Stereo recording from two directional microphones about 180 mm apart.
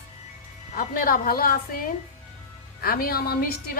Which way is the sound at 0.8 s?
55° left (ahead or behind).